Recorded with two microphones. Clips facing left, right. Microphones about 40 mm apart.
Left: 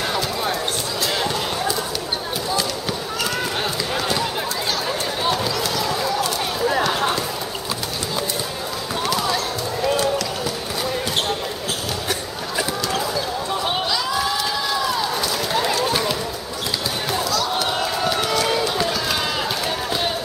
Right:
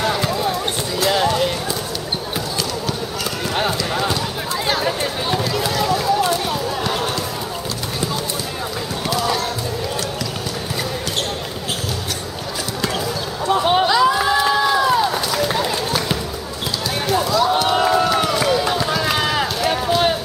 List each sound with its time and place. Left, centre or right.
1.1 s clip-clop: centre
4.6 s chatter: centre
13.5 s a sound: right
18.4 s run: centre